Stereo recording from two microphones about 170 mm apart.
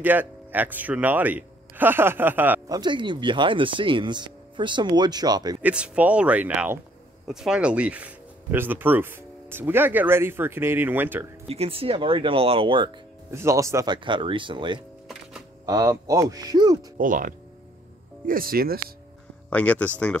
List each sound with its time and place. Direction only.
0.0 s speech: 10° right (ahead or behind)
2.7 s speech: 25° right (ahead or behind)
5.6 s speech: 10° right (ahead or behind)
11.4 s speech: 35° right (ahead or behind)
13.3 s speech: 15° right (ahead or behind)
17.0 s speech: 50° right (ahead or behind)
19.5 s speech: 10° left (ahead or behind)